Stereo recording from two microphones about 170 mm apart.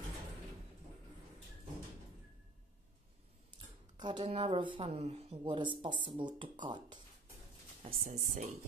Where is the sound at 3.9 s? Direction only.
25° right (ahead or behind).